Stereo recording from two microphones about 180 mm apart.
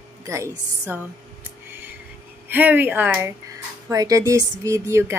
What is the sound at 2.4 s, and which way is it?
A woman's voice, 10° right (ahead or behind).